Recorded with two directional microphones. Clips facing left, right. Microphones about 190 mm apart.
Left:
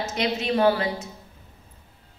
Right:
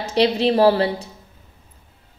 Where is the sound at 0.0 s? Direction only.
30° right (ahead or behind).